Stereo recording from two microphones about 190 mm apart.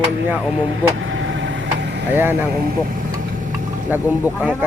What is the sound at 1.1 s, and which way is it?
Vehicle, 80° right.